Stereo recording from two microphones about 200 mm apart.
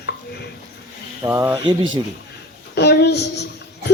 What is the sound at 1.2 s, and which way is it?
Speech, 15° right (ahead or behind).